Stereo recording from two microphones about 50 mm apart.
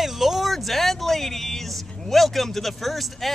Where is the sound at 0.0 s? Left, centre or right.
Centre.